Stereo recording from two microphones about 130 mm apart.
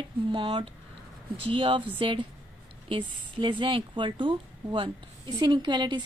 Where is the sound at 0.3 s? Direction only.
40° right (ahead or behind).